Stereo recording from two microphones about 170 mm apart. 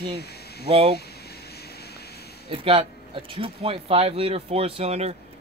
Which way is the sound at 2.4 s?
30° right (ahead or behind).